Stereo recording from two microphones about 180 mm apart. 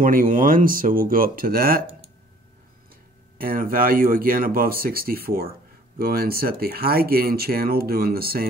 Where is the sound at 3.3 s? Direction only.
50° right (ahead or behind).